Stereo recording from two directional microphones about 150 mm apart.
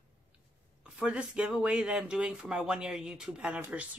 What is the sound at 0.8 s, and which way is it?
Speech, 5° right (ahead or behind).